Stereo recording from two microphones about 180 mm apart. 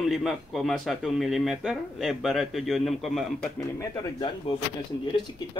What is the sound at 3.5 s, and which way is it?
Speech, 20° left (ahead or behind).